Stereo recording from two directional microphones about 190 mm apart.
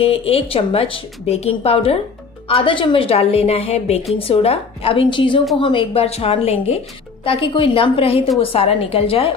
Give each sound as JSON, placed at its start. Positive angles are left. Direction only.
{"t": 0.0, "sound": "a woman's voice", "side_deg": 30}